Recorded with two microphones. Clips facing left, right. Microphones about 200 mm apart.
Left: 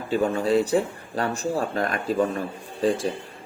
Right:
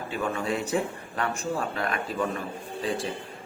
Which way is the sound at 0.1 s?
35° left (ahead or behind).